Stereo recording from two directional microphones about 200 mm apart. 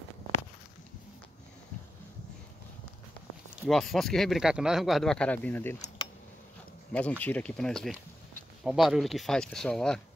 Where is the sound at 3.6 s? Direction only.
Centre (ahead or behind).